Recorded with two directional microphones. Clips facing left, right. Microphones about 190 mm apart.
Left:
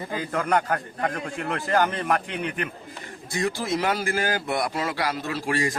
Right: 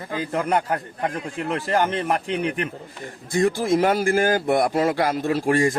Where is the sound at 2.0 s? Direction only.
35° right (ahead or behind).